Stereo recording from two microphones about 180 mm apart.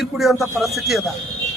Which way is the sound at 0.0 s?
Centre (ahead or behind).